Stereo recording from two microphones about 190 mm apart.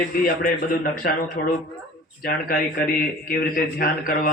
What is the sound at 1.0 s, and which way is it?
Speech, 50° left (ahead or behind).